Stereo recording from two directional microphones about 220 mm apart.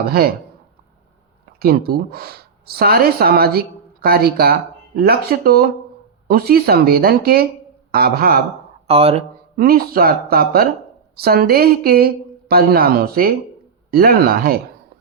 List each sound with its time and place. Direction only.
0.0 s speech: 45° right (ahead or behind)
1.5 s speech: 45° right (ahead or behind)
8.9 s speech: 25° right (ahead or behind)
9.6 s speech: 40° right (ahead or behind)